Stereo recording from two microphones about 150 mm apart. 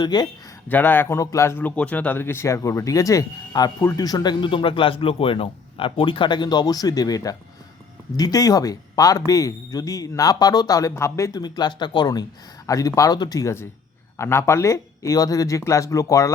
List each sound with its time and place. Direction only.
0.0 s speech: 30° left (ahead or behind)
0.7 s speech: 10° left (ahead or behind)